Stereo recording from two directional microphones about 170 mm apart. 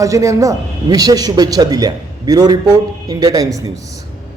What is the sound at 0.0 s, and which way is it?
A man's voice, 20° right (ahead or behind).